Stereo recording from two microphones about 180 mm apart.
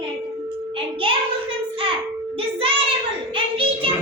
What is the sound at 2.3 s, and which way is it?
Child singing, 30° right (ahead or behind).